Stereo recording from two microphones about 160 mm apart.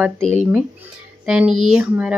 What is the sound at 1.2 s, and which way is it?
Speech, 5° right (ahead or behind).